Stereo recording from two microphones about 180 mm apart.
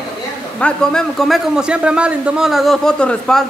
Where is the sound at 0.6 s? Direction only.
5° left (ahead or behind).